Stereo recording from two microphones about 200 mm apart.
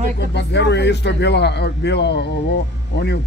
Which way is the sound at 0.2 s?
60° left (ahead or behind).